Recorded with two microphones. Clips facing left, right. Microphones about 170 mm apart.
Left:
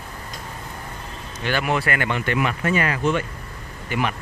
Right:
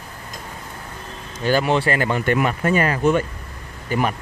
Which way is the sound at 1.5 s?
35° right (ahead or behind).